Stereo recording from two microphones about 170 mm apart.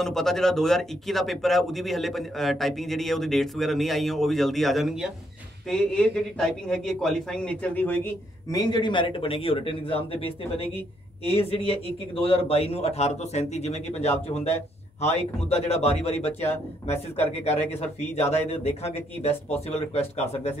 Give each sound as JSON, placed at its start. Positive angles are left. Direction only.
{"t": 0.0, "sound": "speech", "side_deg": 0}
{"t": 8.5, "sound": "speech", "side_deg": 25}